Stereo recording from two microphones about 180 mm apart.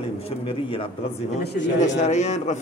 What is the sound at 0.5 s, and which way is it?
Speech, 30° left (ahead or behind).